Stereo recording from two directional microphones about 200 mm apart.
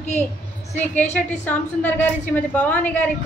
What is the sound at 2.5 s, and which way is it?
Speech, 10° left (ahead or behind).